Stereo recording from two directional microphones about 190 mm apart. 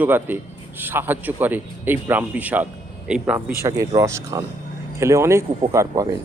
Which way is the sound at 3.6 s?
15° right (ahead or behind).